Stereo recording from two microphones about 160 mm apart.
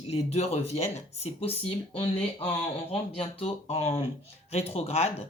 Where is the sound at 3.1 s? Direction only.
35° left (ahead or behind).